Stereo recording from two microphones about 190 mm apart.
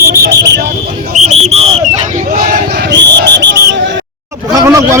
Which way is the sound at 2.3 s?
50° right (ahead or behind).